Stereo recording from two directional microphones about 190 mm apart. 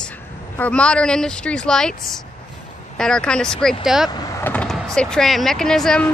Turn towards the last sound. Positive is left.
turn(degrees=5)  # may be behind; listen again after turning